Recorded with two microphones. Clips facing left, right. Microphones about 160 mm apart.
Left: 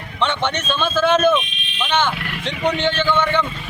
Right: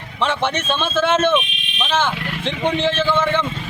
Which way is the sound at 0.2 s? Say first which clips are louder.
Right 1 dB; 5° right (ahead or behind).